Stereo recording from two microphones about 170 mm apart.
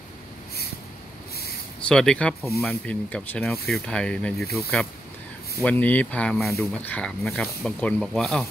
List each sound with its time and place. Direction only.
1.9 s speech: 5° left (ahead or behind)